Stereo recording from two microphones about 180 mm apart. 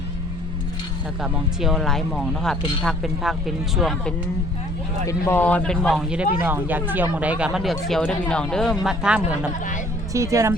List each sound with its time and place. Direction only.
1.2 s speech: centre (ahead or behind)
5.0 s speech: 15° left (ahead or behind); by 9.2 s 5° right (ahead or behind)
10.1 s speech: 15° right (ahead or behind)